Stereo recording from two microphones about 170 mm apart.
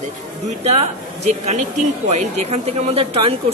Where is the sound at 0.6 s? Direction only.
40° right (ahead or behind).